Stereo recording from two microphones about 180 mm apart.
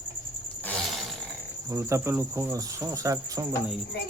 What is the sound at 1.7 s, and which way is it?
Cricket, 15° right (ahead or behind).